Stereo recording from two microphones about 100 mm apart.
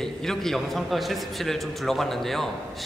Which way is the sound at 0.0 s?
5° left (ahead or behind).